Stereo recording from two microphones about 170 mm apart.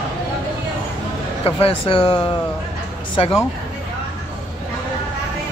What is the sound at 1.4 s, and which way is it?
Speech, 35° left (ahead or behind).